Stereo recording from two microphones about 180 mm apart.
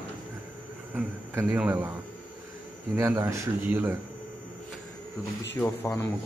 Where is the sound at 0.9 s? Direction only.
10° right (ahead or behind).